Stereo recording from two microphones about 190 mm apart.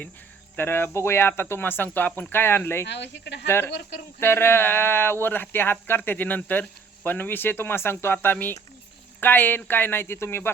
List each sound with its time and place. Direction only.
0.5 s speech: 10° left (ahead or behind)
2.8 s speech: 65° left (ahead or behind)
3.4 s speech: 10° left (ahead or behind)